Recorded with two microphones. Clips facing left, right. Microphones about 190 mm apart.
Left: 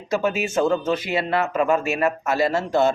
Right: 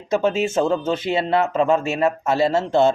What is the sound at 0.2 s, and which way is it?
Speech, 25° right (ahead or behind).